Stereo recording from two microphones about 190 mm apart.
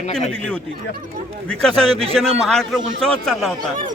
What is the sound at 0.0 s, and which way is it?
Speech, 40° left (ahead or behind).